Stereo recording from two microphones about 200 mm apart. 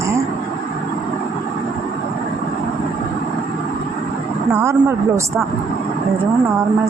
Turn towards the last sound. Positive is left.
turn(degrees=-15)  # may be behind; listen again after turning